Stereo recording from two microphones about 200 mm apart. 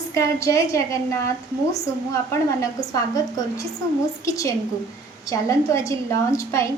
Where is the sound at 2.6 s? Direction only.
15° left (ahead or behind).